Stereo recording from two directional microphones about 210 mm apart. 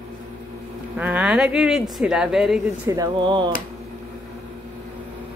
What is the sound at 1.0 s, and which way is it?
Speech, 5° right (ahead or behind).